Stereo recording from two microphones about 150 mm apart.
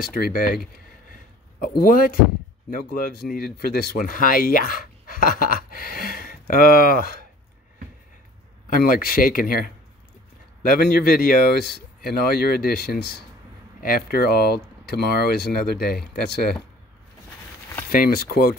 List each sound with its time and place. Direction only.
0.0 s speech: 80° left
1.8 s speech: 75° left (ahead or behind)
2.7 s speech: 85° left
8.6 s speech: 70° left (ahead or behind); by 16.5 s 90° left
17.8 s speech: 75° left (ahead or behind); by 18.5 s 90° left